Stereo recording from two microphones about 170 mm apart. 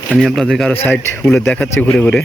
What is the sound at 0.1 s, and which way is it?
Speech, centre (ahead or behind).